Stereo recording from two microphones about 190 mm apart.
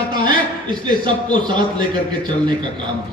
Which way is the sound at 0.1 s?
25° right (ahead or behind).